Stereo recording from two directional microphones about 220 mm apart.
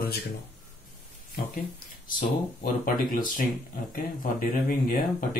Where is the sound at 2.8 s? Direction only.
40° left (ahead or behind).